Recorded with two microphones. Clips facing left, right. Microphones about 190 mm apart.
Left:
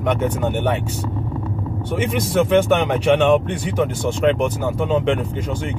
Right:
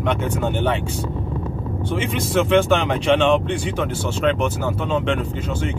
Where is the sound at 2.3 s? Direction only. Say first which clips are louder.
Left 1 dB; 10° left (ahead or behind).